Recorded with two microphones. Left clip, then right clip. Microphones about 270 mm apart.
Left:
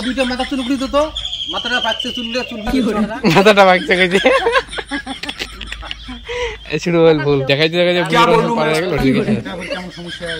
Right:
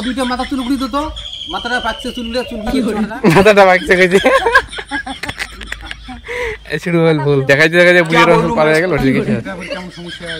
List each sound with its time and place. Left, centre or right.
0.0 s speech: centre
3.2 s speech: centre
6.3 s speech: right
7.4 s speech: centre
8.1 s speech: centre
8.5 s speech: centre